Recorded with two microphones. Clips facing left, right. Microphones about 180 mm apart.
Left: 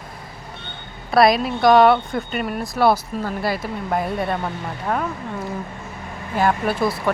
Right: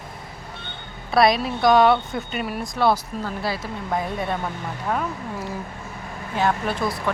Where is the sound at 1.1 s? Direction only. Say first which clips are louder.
Left 3 dB; centre (ahead or behind).